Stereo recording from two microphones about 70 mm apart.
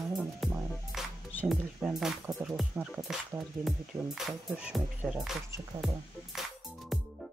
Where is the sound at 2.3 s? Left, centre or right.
Right.